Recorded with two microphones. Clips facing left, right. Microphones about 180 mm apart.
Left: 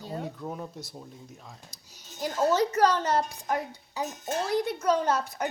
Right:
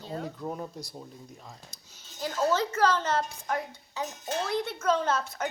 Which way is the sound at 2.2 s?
15° left (ahead or behind).